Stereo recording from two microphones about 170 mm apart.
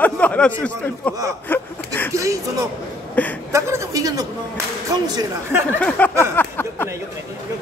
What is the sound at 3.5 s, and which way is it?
A man's voice, 15° right (ahead or behind).